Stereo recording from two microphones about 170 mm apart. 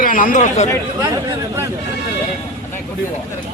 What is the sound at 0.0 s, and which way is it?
Speech, 55° left (ahead or behind).